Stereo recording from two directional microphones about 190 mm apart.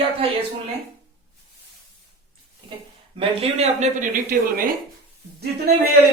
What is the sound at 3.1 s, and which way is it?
Speech, 35° right (ahead or behind).